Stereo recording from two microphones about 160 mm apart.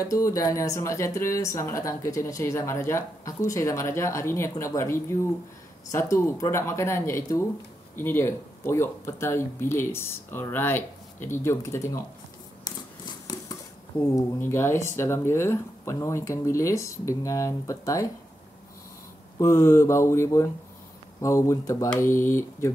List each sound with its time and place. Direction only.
0.0 s speech: 20° left (ahead or behind)
12.6 s a sound: 25° left (ahead or behind)
14.0 s speech: 20° left (ahead or behind)
19.3 s speech: 15° left (ahead or behind)